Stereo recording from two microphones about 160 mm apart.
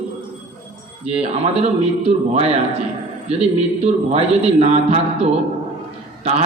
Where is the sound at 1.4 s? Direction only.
40° right (ahead or behind).